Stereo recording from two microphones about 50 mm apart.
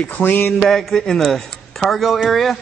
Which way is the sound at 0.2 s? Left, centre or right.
Left.